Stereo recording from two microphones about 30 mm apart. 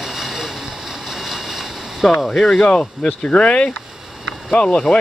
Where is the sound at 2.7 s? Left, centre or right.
Left.